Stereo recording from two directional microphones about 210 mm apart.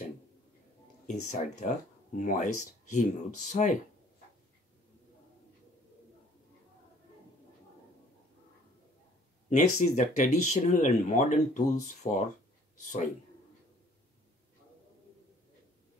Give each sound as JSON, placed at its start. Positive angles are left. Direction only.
{"t": 1.0, "sound": "speech", "side_deg": 35}
{"t": 9.5, "sound": "speech", "side_deg": 35}